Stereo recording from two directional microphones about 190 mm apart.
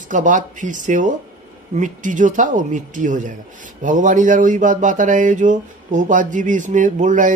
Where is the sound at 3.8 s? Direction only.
40° right (ahead or behind).